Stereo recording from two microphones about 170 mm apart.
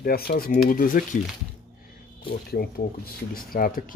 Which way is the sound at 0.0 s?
60° left (ahead or behind).